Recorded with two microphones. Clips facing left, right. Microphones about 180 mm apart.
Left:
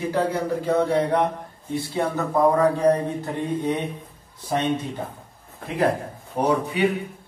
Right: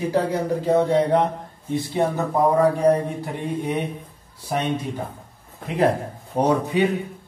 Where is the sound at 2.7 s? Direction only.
10° right (ahead or behind).